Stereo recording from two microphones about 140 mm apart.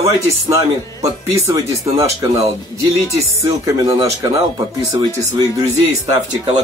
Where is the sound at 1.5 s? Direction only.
25° right (ahead or behind).